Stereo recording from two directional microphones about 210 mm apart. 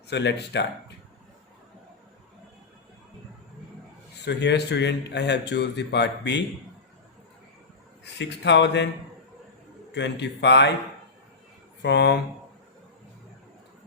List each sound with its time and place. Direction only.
0.1 s speech: 55° left (ahead or behind)
4.3 s speech: 55° left (ahead or behind)
8.0 s speech: 55° left (ahead or behind)
9.9 s speech: 55° left (ahead or behind)
11.8 s speech: 55° left (ahead or behind)